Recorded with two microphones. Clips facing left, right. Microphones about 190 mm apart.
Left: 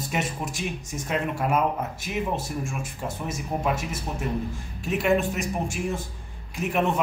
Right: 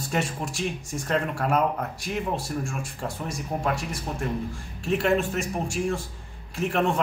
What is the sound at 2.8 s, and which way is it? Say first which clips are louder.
Speech: even; 20° left (ahead or behind).